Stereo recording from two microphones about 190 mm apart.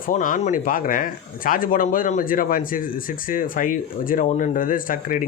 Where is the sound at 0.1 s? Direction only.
45° left (ahead or behind).